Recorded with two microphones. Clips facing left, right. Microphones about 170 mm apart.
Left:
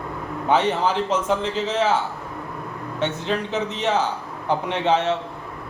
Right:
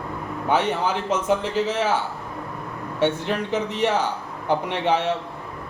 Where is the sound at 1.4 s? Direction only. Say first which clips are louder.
Even; 10° right (ahead or behind).